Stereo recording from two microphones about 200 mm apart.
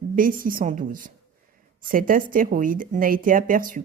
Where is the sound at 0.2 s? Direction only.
45° right (ahead or behind).